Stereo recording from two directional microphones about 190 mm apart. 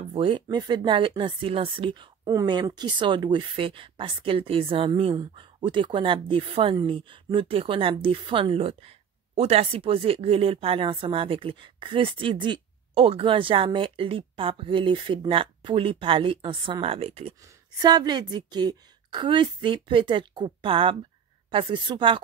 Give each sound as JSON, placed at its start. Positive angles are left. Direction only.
{"t": 0.1, "sound": "speech", "side_deg": -25}